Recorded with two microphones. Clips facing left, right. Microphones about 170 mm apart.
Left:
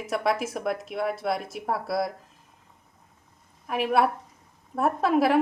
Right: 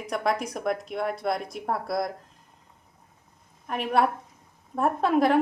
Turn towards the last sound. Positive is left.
turn(degrees=5)  # may be behind; listen again after turning